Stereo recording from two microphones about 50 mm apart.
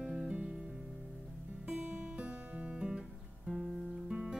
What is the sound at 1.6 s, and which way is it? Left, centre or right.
Music, right.